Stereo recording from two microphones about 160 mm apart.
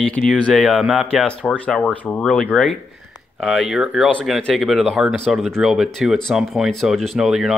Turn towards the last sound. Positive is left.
turn(degrees=-5)  # may be behind; listen again after turning